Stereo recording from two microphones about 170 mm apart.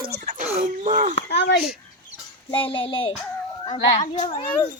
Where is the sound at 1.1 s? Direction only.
90° left.